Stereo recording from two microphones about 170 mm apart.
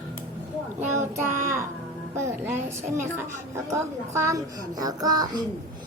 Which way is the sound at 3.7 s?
15° right (ahead or behind).